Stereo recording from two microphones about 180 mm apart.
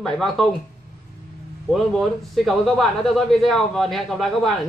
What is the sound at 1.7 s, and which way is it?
Speech, centre (ahead or behind).